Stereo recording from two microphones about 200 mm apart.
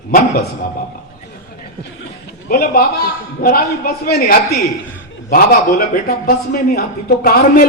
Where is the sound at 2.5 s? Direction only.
50° left (ahead or behind).